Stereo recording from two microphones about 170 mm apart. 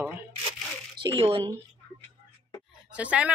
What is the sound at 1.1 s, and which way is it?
Speech, 35° right (ahead or behind).